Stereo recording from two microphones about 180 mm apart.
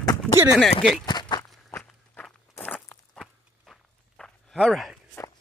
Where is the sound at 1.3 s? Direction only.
25° left (ahead or behind).